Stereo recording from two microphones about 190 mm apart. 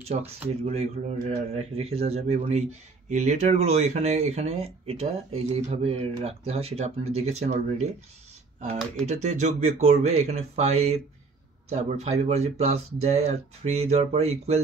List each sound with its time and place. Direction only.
0.0 s speech: 35° right (ahead or behind)
9.0 s speech: 35° right (ahead or behind)